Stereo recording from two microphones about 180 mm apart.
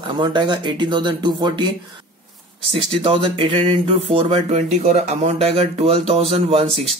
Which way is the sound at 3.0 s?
30° right (ahead or behind).